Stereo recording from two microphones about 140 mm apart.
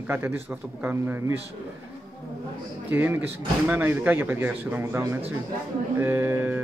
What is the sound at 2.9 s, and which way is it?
Speech, 15° right (ahead or behind).